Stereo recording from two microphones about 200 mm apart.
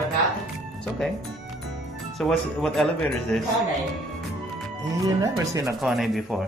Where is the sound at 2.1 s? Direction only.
Centre (ahead or behind).